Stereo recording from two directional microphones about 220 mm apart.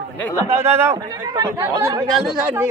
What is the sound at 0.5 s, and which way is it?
Speech, 10° right (ahead or behind).